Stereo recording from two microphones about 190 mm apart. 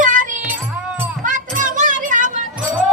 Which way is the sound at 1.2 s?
45° right (ahead or behind).